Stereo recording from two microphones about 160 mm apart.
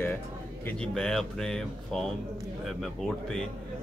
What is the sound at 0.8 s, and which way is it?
Speech, 5° left (ahead or behind).